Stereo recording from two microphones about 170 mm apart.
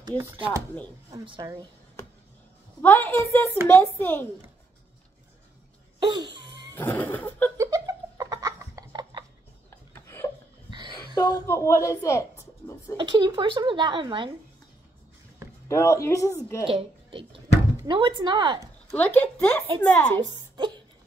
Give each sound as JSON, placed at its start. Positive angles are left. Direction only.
{"t": 0.2, "sound": "speech", "side_deg": -15}
{"t": 1.1, "sound": "speech", "side_deg": -30}
{"t": 2.8, "sound": "speech", "side_deg": 10}
{"t": 5.9, "sound": "laughter", "side_deg": -25}
{"t": 6.7, "sound": "chuckle", "side_deg": 10}
{"t": 7.5, "sound": "laughter", "side_deg": -20}
{"t": 9.7, "sound": "a sound", "side_deg": 15}
{"t": 10.7, "sound": "a sound", "side_deg": -25}
{"t": 11.1, "sound": "speech", "side_deg": 15}
{"t": 12.9, "sound": "speech", "side_deg": -25}
{"t": 15.7, "sound": "speech", "side_deg": 15}
{"t": 16.6, "sound": "a woman's voice", "side_deg": -30}
{"t": 18.9, "sound": "speech", "side_deg": 10}
{"t": 20.5, "sound": "a sound", "side_deg": -25}